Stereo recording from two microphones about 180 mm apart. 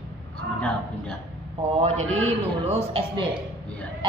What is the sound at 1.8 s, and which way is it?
A woman's voice, 35° right (ahead or behind).